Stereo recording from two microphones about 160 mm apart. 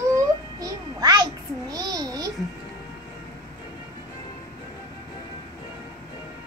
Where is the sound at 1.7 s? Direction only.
25° right (ahead or behind).